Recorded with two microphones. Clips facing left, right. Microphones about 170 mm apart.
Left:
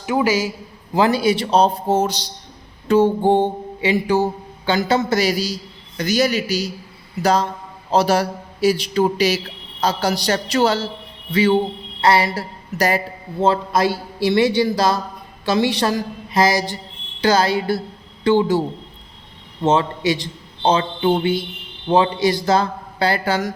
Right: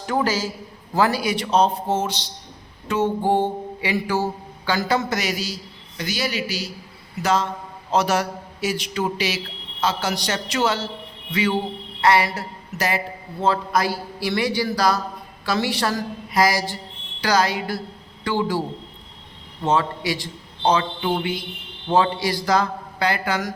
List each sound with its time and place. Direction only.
0.0 s a man's voice: 10° left (ahead or behind); by 2.3 s 40° left (ahead or behind)
2.8 s mantra: 30° left (ahead or behind)
6.0 s a man's voice: 45° left (ahead or behind)
11.3 s mantra: 30° left (ahead or behind)
12.0 s a woman's voice: 30° left (ahead or behind)
13.4 s mantra: 25° left (ahead or behind)
17.2 s a woman's voice: 25° left (ahead or behind)
19.6 s mantra: 25° left (ahead or behind)